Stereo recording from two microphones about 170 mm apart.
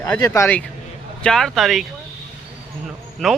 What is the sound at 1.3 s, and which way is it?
Speech, 5° left (ahead or behind).